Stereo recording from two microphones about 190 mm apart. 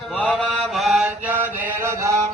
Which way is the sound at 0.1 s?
5° left (ahead or behind).